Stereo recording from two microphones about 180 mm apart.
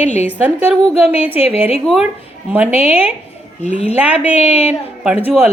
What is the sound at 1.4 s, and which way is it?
Speech, 35° left (ahead or behind).